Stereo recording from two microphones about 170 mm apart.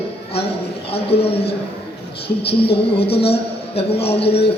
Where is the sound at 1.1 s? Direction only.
35° left (ahead or behind).